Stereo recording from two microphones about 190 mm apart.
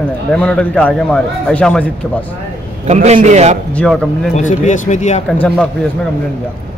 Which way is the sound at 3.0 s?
35° right (ahead or behind).